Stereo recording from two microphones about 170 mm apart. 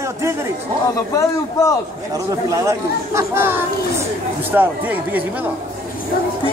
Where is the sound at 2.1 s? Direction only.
20° right (ahead or behind).